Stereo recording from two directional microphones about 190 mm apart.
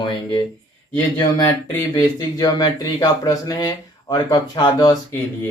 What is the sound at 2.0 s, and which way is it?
Speech, 20° left (ahead or behind).